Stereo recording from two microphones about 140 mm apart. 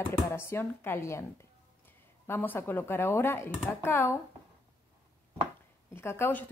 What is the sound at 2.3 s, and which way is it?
A woman's voice, 15° left (ahead or behind).